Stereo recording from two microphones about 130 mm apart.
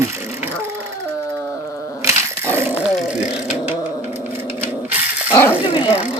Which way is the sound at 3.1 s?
10° right (ahead or behind).